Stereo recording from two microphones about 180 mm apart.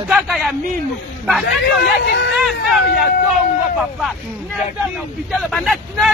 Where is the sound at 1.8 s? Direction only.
65° left (ahead or behind).